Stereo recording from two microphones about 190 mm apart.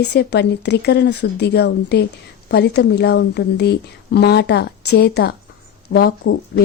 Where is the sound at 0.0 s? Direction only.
60° left (ahead or behind).